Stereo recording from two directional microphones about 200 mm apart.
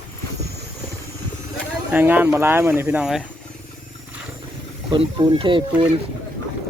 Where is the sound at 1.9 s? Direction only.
10° right (ahead or behind).